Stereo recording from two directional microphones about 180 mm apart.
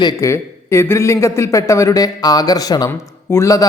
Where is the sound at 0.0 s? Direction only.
20° left (ahead or behind).